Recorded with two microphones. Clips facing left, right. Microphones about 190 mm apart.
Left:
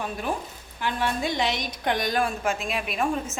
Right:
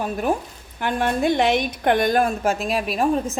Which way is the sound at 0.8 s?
50° right (ahead or behind).